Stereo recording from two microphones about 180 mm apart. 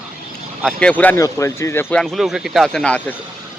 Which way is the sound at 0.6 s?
5° left (ahead or behind).